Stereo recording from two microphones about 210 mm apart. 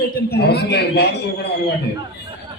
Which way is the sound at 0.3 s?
50° left (ahead or behind).